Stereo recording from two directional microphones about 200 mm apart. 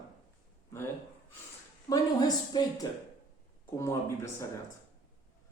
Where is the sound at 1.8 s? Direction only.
20° left (ahead or behind).